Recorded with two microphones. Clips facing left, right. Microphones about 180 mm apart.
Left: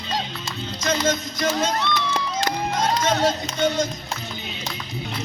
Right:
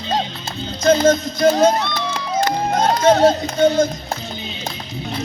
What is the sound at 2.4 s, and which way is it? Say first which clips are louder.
Music: right 7 dB; 55° right (ahead or behind).